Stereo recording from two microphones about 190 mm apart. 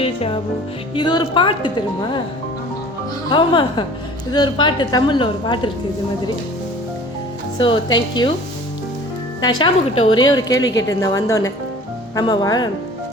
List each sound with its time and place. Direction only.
0.0 s music: 30° left (ahead or behind)
0.9 s a woman's voice: 25° left (ahead or behind)
3.2 s a woman's voice: 25° left (ahead or behind)
7.6 s a woman's voice: 25° left (ahead or behind)
9.4 s a woman's voice: 20° left (ahead or behind)